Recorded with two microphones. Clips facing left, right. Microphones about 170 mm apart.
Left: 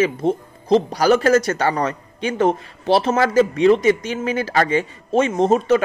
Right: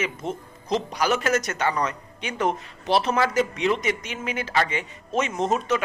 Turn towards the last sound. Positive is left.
turn(degrees=30)  # may be behind; listen again after turning